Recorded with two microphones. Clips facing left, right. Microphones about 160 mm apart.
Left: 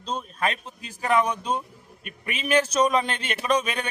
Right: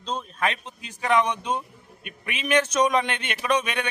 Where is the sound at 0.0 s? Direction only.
10° left (ahead or behind).